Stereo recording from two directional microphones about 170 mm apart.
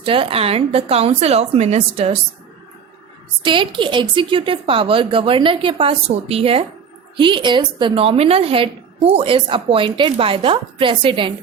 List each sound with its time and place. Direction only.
0.0 s a woman's voice: 30° right (ahead or behind)
3.4 s a woman's voice: 30° right (ahead or behind)